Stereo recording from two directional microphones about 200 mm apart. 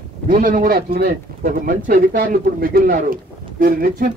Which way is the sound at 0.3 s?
45° right (ahead or behind).